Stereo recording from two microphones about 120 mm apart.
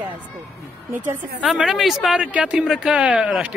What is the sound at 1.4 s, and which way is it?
Speech, centre (ahead or behind).